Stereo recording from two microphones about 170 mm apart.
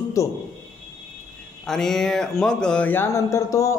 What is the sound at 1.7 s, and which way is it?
Speech, centre (ahead or behind).